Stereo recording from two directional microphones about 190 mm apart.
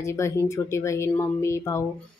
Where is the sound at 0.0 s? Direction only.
15° left (ahead or behind).